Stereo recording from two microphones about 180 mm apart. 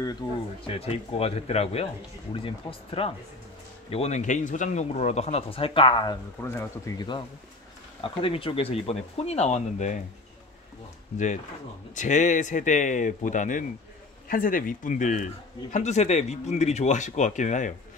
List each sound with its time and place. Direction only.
0.7 s speech: 35° left (ahead or behind)
11.9 s speech: 45° left (ahead or behind)